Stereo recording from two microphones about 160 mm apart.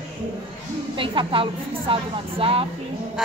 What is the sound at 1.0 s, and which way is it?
A woman's voice, 30° right (ahead or behind).